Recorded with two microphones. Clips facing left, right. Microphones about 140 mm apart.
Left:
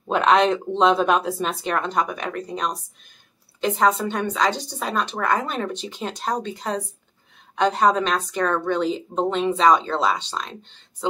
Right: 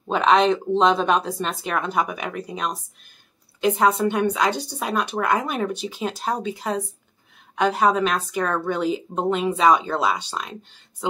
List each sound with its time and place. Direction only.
0.0 s a woman's voice: centre (ahead or behind)